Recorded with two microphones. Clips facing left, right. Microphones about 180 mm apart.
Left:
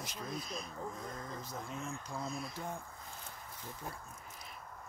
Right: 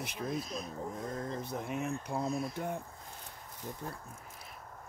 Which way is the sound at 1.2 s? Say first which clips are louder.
Right 6 dB; 65° right (ahead or behind).